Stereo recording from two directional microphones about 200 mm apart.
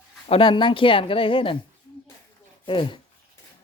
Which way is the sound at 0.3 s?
25° left (ahead or behind).